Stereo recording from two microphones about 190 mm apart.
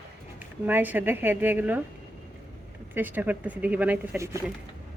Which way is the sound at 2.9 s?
10° right (ahead or behind).